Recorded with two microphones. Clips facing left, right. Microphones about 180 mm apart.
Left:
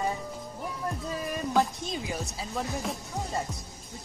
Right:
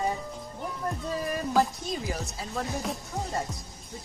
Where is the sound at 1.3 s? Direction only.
Centre (ahead or behind).